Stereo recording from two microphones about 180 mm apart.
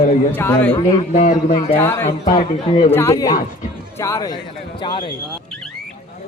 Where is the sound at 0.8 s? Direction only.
20° left (ahead or behind).